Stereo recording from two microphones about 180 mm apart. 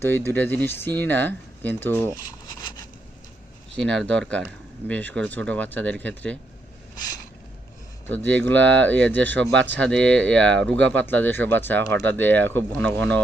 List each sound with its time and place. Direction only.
0.0 s speech: 10° left (ahead or behind)
2.6 s a sound: 20° left (ahead or behind)
3.8 s speech: 5° left (ahead or behind)
8.0 s speech: 10° left (ahead or behind)